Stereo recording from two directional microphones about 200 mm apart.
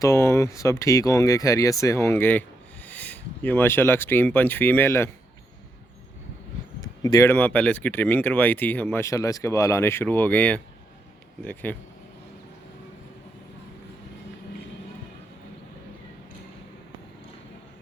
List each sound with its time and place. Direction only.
0.0 s speech: 15° left (ahead or behind)
7.0 s speech: 15° left (ahead or behind)